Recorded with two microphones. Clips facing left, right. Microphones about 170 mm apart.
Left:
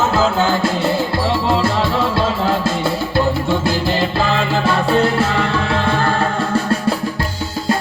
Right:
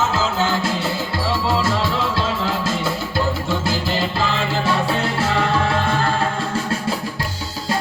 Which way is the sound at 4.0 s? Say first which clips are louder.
Left 4 dB; 60° left (ahead or behind).